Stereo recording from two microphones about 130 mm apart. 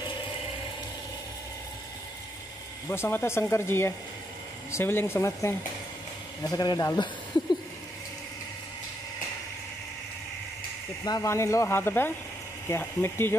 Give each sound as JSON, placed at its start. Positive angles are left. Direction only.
{"t": 2.9, "sound": "speech", "side_deg": 15}
{"t": 6.4, "sound": "speech", "side_deg": 30}
{"t": 11.1, "sound": "speech", "side_deg": 25}